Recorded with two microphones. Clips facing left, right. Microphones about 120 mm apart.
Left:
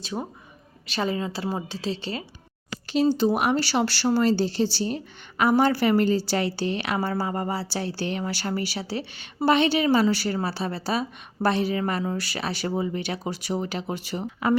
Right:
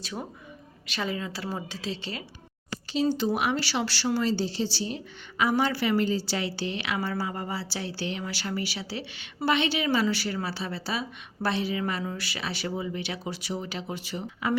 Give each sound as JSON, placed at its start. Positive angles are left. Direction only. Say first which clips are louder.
{"t": 0.0, "sound": "a woman's voice", "louder": "left 4 dB", "side_deg": 25}
{"t": 2.8, "sound": "speech", "louder": "left 4 dB", "side_deg": 55}
{"t": 3.2, "sound": "speech", "louder": "left 5 dB", "side_deg": 40}